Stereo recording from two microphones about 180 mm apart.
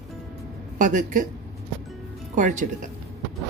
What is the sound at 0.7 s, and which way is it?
Speech, 45° right (ahead or behind).